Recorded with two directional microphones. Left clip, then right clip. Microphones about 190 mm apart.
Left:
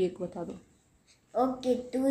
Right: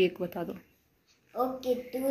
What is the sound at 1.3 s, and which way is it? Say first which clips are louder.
Speech: left 2 dB; 20° left (ahead or behind).